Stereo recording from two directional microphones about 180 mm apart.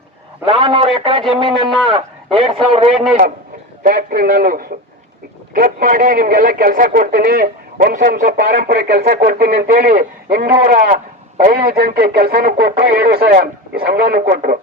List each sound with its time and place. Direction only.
0.4 s a man's voice: 30° right (ahead or behind)
3.8 s a man's voice: 55° right (ahead or behind)
7.3 s speech: 65° right (ahead or behind)
7.8 s speech: 50° right (ahead or behind)